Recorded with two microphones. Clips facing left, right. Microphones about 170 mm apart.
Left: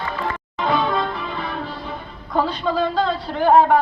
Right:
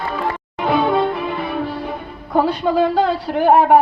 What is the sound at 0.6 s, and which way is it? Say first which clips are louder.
Music: right 4 dB; 65° right (ahead or behind).